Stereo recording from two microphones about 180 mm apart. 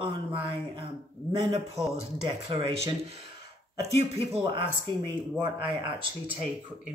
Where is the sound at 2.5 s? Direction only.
30° right (ahead or behind).